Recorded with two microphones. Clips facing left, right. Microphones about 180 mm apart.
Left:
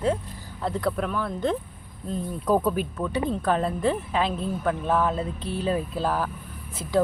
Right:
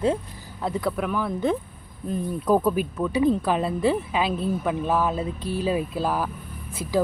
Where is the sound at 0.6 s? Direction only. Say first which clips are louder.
Right 1 dB; 5° right (ahead or behind).